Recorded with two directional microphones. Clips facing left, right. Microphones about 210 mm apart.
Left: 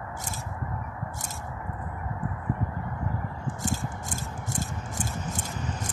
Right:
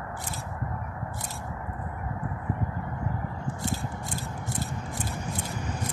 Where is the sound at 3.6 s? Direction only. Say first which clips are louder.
Left 1 dB; 45° left (ahead or behind).